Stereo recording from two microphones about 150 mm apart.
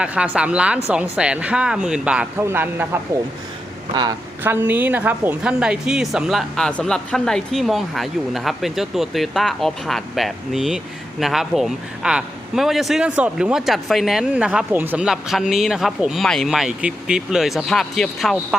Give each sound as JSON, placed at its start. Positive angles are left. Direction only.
{"t": 0.0, "sound": "speech", "side_deg": -5}
{"t": 3.9, "sound": "speech", "side_deg": -30}
{"t": 4.4, "sound": "a man's voice", "side_deg": -10}